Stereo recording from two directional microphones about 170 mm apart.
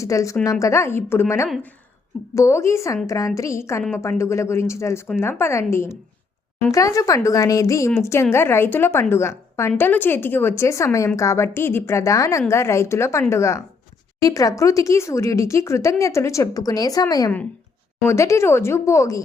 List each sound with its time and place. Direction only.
0.0 s speech: 20° left (ahead or behind)